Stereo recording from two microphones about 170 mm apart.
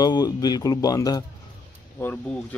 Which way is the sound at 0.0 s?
25° left (ahead or behind).